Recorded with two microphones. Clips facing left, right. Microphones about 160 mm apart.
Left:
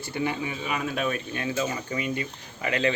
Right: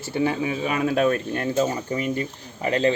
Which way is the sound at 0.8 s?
40° right (ahead or behind).